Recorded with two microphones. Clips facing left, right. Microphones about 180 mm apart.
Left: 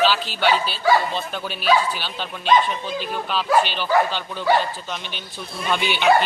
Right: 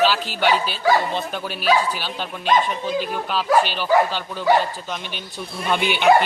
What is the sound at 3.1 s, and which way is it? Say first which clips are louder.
Speech: left 1 dB; 5° right (ahead or behind).